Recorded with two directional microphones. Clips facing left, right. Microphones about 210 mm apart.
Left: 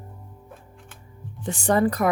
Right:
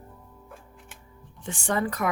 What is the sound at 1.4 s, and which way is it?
Speech, 40° left (ahead or behind).